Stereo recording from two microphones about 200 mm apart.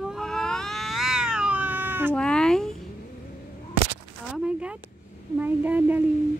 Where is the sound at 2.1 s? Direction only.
5° left (ahead or behind).